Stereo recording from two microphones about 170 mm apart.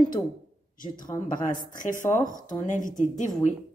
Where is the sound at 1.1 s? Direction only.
15° left (ahead or behind).